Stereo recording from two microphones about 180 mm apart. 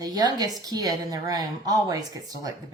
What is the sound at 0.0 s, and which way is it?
Speech, 20° right (ahead or behind).